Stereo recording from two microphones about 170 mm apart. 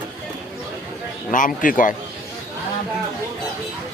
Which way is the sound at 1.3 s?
50° left (ahead or behind).